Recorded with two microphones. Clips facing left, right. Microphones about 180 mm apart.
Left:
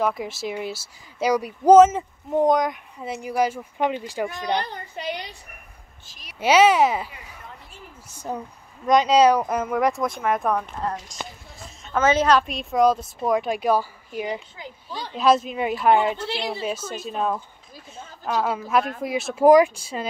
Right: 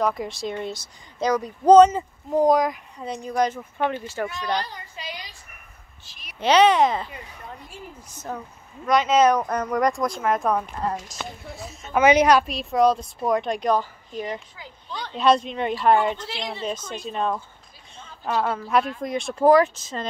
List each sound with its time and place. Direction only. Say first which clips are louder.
0.0 s speech: even; centre (ahead or behind)
4.6 s a woman's voice: left 2 dB; 55° left (ahead or behind)
6.0 s a sound: even; 40° left (ahead or behind)
6.4 s speech: even; 5° left (ahead or behind)
11.6 s a sound: right 2 dB; 5° right (ahead or behind)
12.0 s a woman's voice: right 2 dB; 15° right (ahead or behind)
12.4 s a man's voice: even; centre (ahead or behind)